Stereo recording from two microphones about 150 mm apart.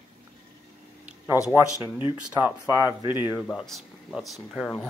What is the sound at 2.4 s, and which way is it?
Speech, 15° right (ahead or behind).